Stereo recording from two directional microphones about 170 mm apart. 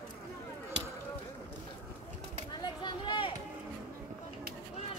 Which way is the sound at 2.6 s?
25° left (ahead or behind).